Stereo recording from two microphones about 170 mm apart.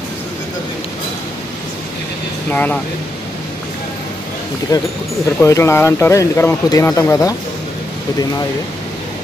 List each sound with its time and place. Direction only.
2.5 s speech: 10° left (ahead or behind)
4.7 s speech: 20° left (ahead or behind)